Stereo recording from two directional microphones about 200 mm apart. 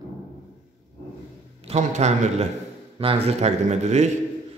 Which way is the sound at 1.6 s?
35° right (ahead or behind).